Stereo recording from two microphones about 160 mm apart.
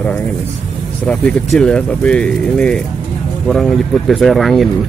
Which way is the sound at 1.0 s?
5° left (ahead or behind).